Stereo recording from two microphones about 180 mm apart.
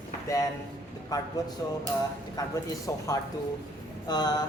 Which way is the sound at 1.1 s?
20° left (ahead or behind).